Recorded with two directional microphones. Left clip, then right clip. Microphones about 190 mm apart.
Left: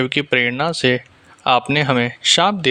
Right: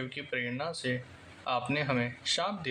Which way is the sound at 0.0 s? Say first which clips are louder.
Left 18 dB; 55° left (ahead or behind).